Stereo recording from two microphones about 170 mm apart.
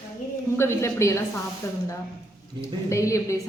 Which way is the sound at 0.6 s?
15° left (ahead or behind).